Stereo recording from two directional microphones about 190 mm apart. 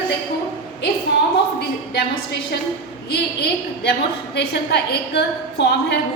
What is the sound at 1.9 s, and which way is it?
A woman's voice, 60° left (ahead or behind).